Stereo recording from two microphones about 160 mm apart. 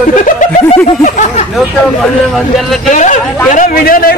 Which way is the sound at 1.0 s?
50° left (ahead or behind).